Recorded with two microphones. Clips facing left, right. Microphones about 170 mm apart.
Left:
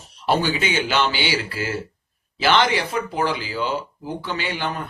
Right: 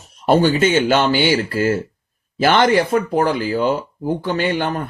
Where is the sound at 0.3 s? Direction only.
45° right (ahead or behind).